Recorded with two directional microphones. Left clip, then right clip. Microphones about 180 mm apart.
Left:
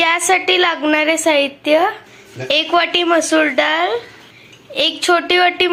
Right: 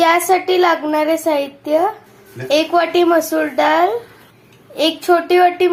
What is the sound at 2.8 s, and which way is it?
A woman's voice, 5° left (ahead or behind).